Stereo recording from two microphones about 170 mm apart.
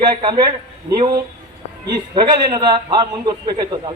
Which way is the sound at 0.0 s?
25° right (ahead or behind).